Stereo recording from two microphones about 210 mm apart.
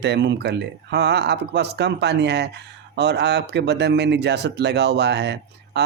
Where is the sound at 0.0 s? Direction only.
55° right (ahead or behind).